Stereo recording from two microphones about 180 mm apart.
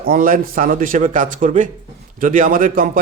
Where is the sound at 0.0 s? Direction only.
50° right (ahead or behind).